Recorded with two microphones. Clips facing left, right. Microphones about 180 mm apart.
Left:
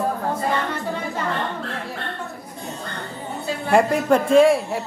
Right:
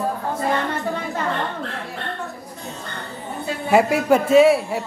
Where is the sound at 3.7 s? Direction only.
5° right (ahead or behind).